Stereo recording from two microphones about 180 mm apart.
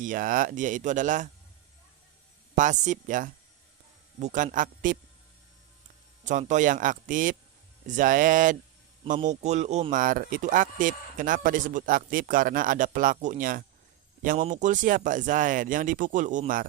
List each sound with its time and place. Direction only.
0.0 s speech: 50° right (ahead or behind)
2.6 s speech: 45° right (ahead or behind)
6.5 s speech: 45° right (ahead or behind)